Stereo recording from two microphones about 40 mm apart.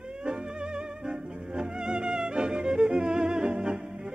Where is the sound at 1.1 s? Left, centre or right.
Centre.